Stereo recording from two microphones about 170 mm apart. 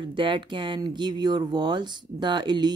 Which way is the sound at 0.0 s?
30° right (ahead or behind).